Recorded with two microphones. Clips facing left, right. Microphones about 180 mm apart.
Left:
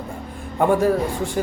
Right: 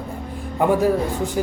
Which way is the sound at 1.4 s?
5° right (ahead or behind).